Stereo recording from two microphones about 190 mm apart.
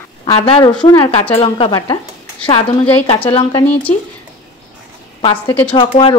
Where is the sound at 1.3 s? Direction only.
30° left (ahead or behind).